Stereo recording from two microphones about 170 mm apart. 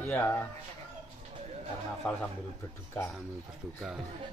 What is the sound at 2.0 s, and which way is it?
Speech, 5° left (ahead or behind).